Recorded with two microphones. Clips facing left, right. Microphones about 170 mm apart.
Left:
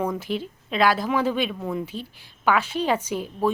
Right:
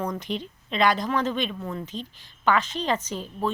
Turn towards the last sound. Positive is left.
turn(degrees=10)  # may be behind; listen again after turning